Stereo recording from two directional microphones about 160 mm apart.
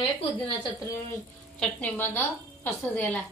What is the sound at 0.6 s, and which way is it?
Speech, 30° left (ahead or behind).